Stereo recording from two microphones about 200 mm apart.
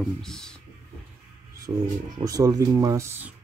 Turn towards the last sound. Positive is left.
turn(degrees=-10)  # may be behind; listen again after turning